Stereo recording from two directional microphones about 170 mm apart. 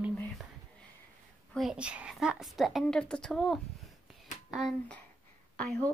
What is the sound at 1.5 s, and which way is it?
A woman's voice, centre (ahead or behind).